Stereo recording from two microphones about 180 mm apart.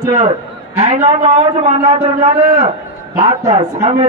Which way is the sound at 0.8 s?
35° right (ahead or behind).